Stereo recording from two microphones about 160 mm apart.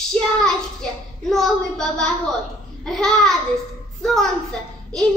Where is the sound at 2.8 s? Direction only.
Centre (ahead or behind).